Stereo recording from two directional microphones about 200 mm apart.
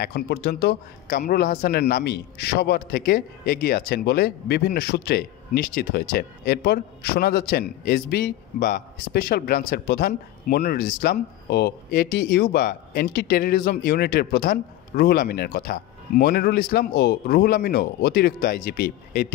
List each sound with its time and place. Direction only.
0.0 s a man's voice: 55° left (ahead or behind)